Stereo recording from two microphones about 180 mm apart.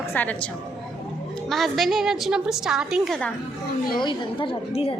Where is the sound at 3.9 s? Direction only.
25° left (ahead or behind).